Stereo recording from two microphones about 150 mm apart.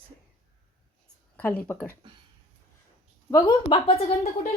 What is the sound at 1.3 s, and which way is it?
Speech, 10° left (ahead or behind).